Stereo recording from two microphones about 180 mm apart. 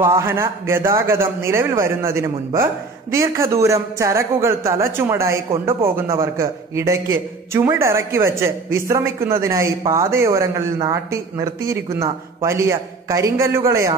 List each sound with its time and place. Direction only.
0.0 s a man's voice: 15° right (ahead or behind)